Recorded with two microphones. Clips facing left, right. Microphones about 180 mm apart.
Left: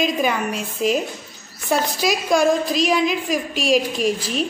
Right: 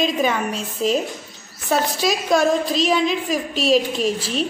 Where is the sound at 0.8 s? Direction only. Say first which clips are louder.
Even; 30° right (ahead or behind).